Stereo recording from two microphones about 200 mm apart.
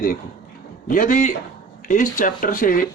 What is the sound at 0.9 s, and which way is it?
Speech, 40° left (ahead or behind).